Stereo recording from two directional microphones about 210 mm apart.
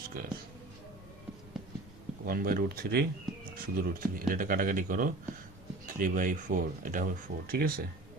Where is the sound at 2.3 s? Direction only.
45° right (ahead or behind).